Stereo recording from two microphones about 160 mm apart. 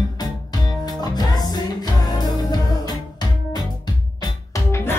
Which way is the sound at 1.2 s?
25° left (ahead or behind).